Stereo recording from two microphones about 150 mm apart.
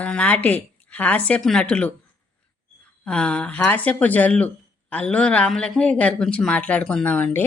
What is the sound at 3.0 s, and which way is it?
Speech, 5° left (ahead or behind).